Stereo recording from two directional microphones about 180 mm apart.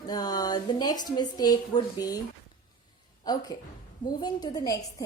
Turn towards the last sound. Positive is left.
turn(degrees=20)  # may be behind; listen again after turning